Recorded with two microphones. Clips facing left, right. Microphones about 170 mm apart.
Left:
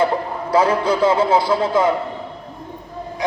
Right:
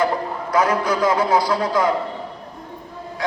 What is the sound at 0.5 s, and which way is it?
A man's voice, 30° left (ahead or behind).